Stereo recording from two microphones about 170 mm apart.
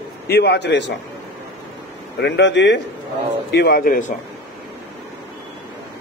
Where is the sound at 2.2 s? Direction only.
90° left.